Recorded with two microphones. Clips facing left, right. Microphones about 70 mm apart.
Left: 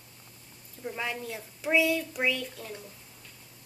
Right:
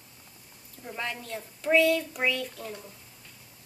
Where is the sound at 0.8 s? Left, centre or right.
Centre.